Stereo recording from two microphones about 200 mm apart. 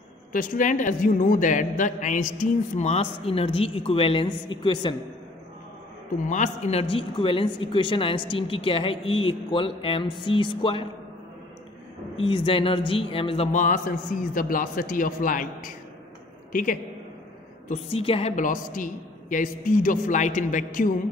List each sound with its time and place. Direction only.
0.3 s a woman's voice: 40° left (ahead or behind); by 4.9 s 25° left (ahead or behind)
6.2 s speech: 35° left (ahead or behind)
12.2 s a woman's voice: 25° left (ahead or behind); by 15.7 s 40° left (ahead or behind)
17.6 s a woman's voice: 30° left (ahead or behind)